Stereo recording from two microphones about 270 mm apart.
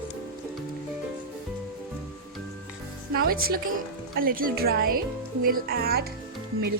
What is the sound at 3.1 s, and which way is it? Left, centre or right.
Speech, right.